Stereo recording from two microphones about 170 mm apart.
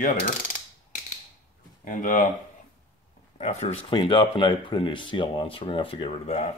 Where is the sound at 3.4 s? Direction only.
40° left (ahead or behind).